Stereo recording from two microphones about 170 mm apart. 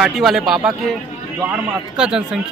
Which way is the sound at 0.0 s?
Centre (ahead or behind).